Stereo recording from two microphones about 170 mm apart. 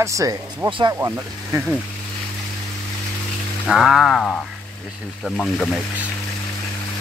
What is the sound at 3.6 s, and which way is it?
Frying, centre (ahead or behind).